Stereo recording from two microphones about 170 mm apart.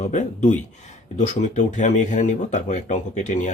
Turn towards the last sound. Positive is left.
turn(degrees=45)  # may be behind; listen again after turning